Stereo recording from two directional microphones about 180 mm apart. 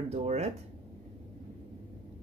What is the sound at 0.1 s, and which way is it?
Speech, 35° right (ahead or behind).